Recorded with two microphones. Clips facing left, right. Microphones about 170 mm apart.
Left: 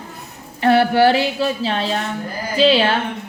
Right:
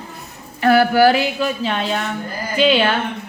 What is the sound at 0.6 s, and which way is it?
A woman's voice, 30° left (ahead or behind).